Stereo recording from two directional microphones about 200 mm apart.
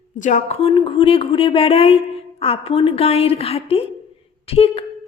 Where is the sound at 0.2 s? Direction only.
40° left (ahead or behind).